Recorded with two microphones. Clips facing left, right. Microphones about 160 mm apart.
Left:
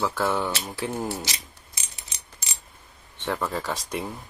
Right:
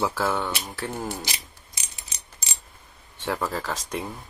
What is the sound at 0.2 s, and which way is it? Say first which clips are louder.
Speech: left 1 dB; centre (ahead or behind).